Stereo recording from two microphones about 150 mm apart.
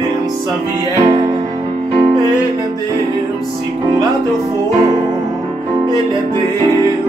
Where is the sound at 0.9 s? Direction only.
25° right (ahead or behind).